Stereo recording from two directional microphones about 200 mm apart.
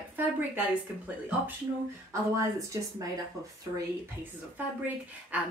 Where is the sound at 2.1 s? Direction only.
15° right (ahead or behind).